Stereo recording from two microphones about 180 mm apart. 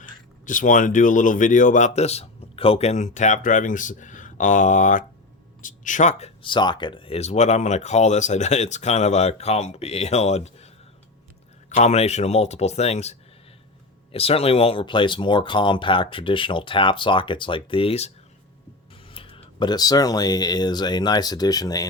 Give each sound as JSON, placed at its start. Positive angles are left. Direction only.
{"t": 0.4, "sound": "speech", "side_deg": 45}
{"t": 11.7, "sound": "speech", "side_deg": 40}
{"t": 19.1, "sound": "speech", "side_deg": 30}